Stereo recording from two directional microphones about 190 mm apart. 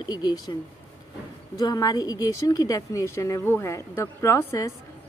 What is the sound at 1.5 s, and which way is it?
A woman's voice, 20° left (ahead or behind).